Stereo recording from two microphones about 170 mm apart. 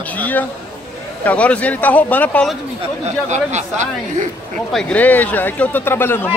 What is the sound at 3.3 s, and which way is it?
Speech, 45° right (ahead or behind).